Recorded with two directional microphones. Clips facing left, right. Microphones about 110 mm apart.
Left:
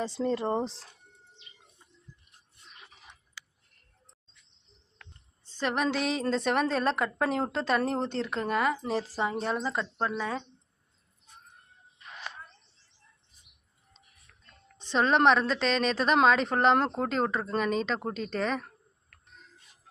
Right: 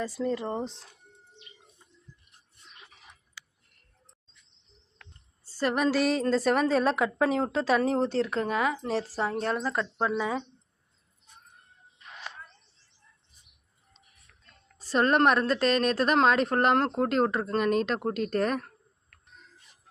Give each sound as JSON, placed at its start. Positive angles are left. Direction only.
{"t": 0.0, "sound": "speech", "side_deg": 30}
{"t": 5.5, "sound": "a woman's voice", "side_deg": -5}
{"t": 14.8, "sound": "a woman's voice", "side_deg": -5}